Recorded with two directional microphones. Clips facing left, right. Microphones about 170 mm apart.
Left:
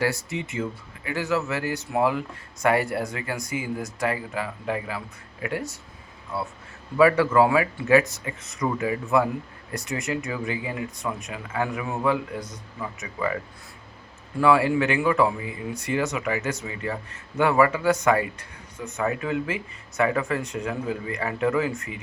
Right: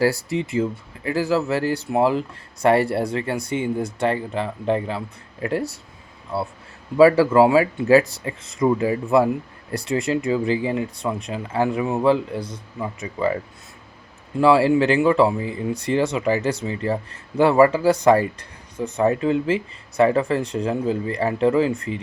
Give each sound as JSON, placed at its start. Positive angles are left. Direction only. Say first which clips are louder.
{"t": 0.0, "sound": "speech", "louder": "right 6 dB", "side_deg": -35}